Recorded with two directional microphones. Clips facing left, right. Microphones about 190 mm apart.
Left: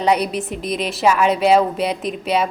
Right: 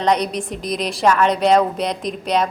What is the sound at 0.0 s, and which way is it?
A woman's voice, 5° left (ahead or behind).